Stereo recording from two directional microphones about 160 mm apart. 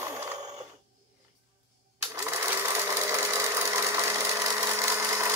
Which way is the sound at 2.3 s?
15° right (ahead or behind).